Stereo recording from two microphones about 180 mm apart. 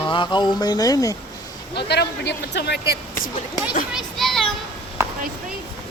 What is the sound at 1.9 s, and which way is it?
Speech, 70° left (ahead or behind).